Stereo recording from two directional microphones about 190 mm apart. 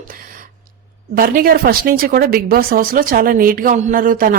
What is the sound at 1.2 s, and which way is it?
Speech, 50° right (ahead or behind).